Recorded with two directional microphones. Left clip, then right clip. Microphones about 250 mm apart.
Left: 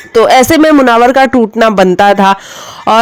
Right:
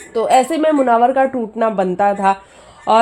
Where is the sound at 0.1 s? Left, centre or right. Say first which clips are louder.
Left 8 dB; left.